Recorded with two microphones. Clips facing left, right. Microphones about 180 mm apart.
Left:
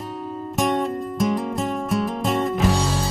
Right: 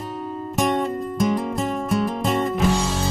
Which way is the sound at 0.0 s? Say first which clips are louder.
Right 1 dB; centre (ahead or behind).